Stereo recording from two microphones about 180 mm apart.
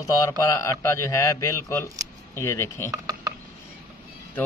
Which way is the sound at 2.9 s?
20° right (ahead or behind).